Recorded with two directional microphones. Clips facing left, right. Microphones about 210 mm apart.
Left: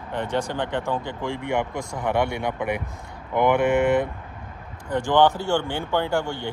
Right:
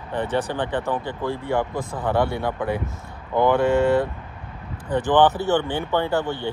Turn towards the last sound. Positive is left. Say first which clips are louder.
# right 2 dB
turn(degrees=10)  # may be behind; listen again after turning